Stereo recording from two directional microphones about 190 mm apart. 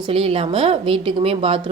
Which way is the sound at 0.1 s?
30° right (ahead or behind).